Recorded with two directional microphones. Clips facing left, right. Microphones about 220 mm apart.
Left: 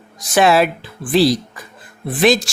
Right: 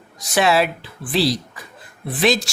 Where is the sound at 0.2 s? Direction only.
50° left (ahead or behind).